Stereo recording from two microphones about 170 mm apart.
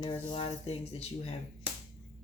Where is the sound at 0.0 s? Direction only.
30° left (ahead or behind).